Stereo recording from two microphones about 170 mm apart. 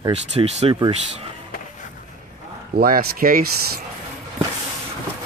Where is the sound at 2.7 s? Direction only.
65° right (ahead or behind).